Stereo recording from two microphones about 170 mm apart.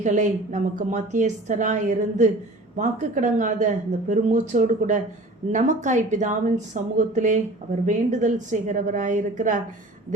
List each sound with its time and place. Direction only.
0.0 s a woman's voice: 45° right (ahead or behind)